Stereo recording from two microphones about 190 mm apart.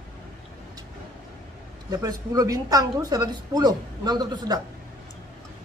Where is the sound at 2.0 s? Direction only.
20° right (ahead or behind).